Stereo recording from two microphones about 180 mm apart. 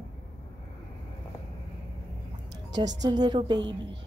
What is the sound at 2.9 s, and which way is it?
Speech, 20° right (ahead or behind).